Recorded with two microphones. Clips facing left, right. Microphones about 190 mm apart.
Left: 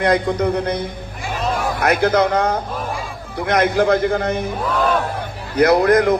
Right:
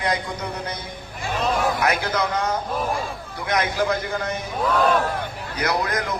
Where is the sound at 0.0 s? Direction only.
55° left (ahead or behind).